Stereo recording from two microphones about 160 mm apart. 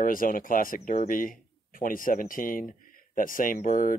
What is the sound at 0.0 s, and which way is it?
Speech, 60° left (ahead or behind).